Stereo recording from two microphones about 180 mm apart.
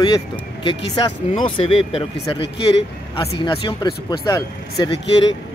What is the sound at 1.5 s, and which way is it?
Speech, 30° left (ahead or behind).